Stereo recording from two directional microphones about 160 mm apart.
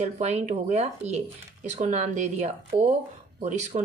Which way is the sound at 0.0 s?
45° right (ahead or behind).